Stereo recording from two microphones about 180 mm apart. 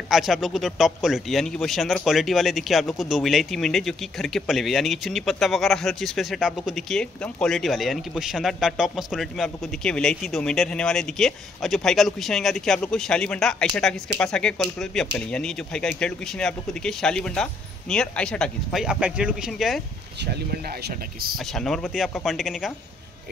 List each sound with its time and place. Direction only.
0.1 s a man's voice: centre (ahead or behind)
20.8 s speech: 55° right (ahead or behind)
21.5 s a man's voice: centre (ahead or behind)